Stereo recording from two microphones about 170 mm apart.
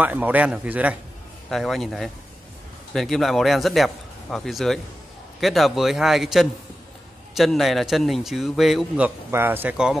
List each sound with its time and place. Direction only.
0.0 s a man's voice: 10° right (ahead or behind)